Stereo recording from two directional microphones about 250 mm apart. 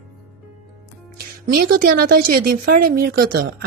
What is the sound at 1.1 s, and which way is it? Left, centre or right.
Speech, right.